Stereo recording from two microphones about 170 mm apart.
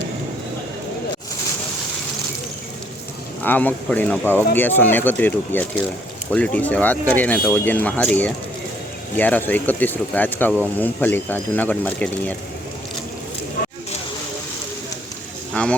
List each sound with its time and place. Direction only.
3.4 s speech: 10° left (ahead or behind)
13.6 s a sound: 60° left (ahead or behind)
15.6 s speech: 5° left (ahead or behind)